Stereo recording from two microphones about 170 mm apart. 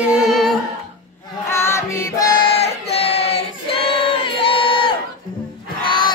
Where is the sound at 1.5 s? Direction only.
15° left (ahead or behind).